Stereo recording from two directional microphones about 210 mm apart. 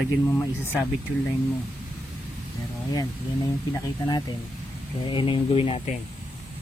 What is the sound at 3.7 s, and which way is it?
Speech, 20° left (ahead or behind).